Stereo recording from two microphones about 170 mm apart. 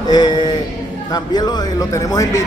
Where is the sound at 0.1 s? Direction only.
25° left (ahead or behind).